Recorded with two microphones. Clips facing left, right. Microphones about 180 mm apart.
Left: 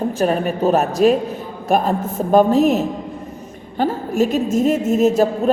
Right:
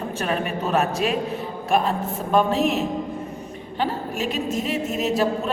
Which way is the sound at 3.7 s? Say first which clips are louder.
Left 8 dB; 45° left (ahead or behind).